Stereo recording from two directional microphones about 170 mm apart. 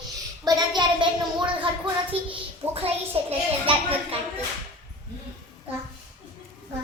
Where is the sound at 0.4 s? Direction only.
25° right (ahead or behind).